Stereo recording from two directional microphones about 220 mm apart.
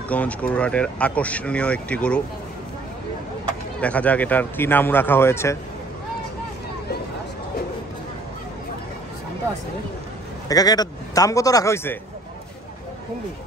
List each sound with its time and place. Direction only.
0.1 s speech: 5° left (ahead or behind)
3.8 s speech: 5° left (ahead or behind)
10.5 s speech: 15° left (ahead or behind)